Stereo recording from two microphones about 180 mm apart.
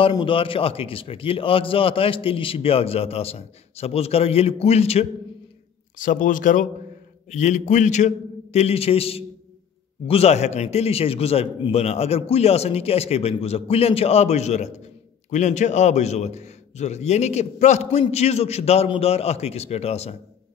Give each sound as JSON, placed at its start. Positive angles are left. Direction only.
{"t": 0.0, "sound": "a man's voice", "side_deg": 30}
{"t": 5.9, "sound": "a man's voice", "side_deg": 50}